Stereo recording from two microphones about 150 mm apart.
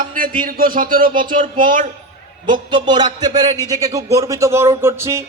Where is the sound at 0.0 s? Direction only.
65° right (ahead or behind).